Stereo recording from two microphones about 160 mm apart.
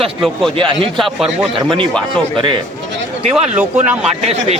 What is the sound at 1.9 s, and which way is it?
Speech, 5° left (ahead or behind).